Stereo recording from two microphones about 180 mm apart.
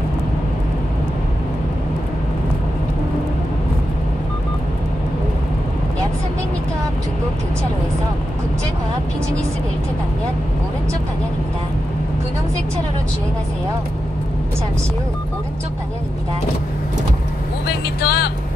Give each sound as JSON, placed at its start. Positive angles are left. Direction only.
{"t": 17.6, "sound": "speech", "side_deg": 60}